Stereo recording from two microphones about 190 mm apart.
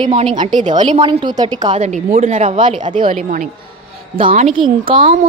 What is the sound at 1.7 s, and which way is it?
A woman's voice, 35° right (ahead or behind).